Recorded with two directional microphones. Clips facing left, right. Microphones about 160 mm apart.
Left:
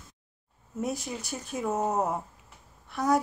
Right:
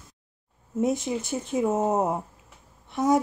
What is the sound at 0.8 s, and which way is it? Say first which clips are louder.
Speech: right 7 dB; 20° right (ahead or behind).